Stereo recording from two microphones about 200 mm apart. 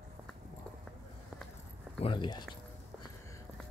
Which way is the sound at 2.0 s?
25° left (ahead or behind).